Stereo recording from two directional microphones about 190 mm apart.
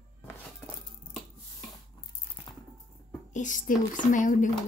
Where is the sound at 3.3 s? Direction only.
40° left (ahead or behind).